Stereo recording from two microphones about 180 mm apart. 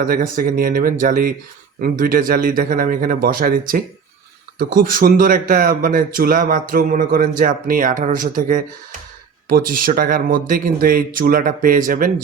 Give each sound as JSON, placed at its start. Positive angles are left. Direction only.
{"t": 0.0, "sound": "speech", "side_deg": -50}